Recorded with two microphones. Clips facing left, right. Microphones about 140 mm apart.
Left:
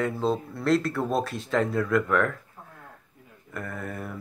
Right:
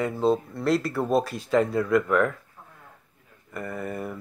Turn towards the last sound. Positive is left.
turn(degrees=0)  # may be behind; listen again after turning